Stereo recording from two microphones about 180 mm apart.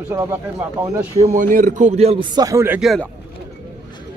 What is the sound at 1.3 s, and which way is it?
Speech, 50° right (ahead or behind).